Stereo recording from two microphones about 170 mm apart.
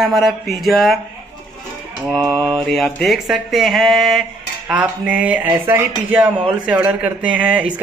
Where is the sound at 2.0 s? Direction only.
5° left (ahead or behind).